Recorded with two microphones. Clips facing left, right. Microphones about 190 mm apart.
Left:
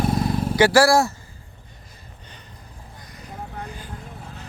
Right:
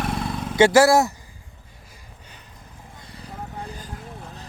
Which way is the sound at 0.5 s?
25° right (ahead or behind).